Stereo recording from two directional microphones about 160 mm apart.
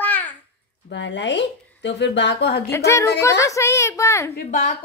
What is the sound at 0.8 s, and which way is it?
Speech, 90° left.